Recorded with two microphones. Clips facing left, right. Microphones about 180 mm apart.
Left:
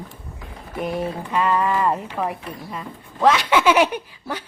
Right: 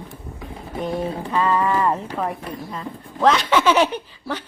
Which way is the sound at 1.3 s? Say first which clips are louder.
Right 1 dB; centre (ahead or behind).